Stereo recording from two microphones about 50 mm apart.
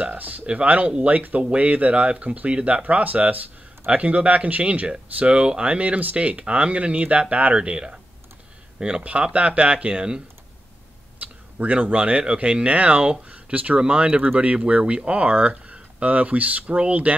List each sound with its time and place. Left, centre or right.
0.0 s speech: right
11.1 s speech: right